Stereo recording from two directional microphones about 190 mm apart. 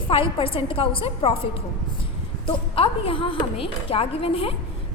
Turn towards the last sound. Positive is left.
turn(degrees=30)  # may be behind; listen again after turning